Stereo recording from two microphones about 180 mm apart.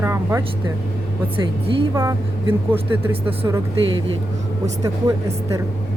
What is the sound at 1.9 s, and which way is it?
Speech, 20° right (ahead or behind).